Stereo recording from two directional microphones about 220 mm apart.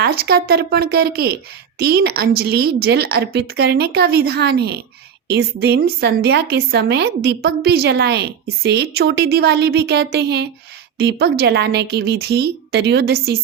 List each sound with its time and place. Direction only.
0.0 s a woman's voice: 45° right (ahead or behind)